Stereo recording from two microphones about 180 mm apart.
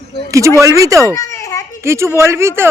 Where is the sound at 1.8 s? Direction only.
15° right (ahead or behind).